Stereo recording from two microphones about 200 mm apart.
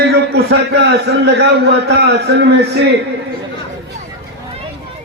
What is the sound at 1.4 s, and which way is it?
A man's voice, 55° right (ahead or behind).